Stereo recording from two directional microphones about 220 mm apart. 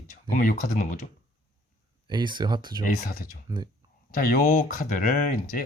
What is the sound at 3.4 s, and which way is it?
Speech, 20° right (ahead or behind).